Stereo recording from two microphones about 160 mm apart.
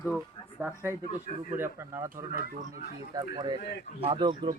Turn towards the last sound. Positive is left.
turn(degrees=-30)  # may be behind; listen again after turning